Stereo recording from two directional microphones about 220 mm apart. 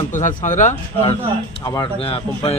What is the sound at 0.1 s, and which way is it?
A man's voice, 35° left (ahead or behind).